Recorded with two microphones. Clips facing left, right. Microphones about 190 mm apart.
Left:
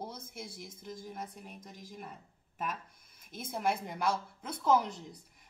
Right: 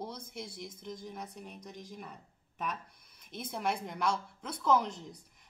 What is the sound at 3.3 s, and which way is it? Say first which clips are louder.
Speech: right 1 dB; 50° left (ahead or behind).